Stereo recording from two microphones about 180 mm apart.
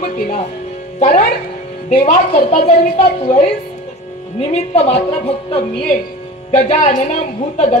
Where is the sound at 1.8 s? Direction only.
40° left (ahead or behind).